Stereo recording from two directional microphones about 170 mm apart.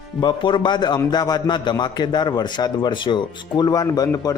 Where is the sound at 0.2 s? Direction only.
25° left (ahead or behind).